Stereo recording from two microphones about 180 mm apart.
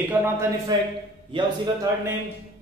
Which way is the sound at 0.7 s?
20° right (ahead or behind).